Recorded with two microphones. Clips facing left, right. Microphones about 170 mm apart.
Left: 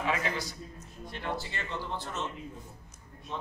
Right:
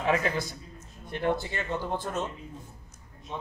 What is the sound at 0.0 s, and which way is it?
Speech, 45° right (ahead or behind).